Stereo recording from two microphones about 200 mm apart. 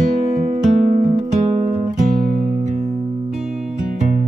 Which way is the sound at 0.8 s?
35° right (ahead or behind).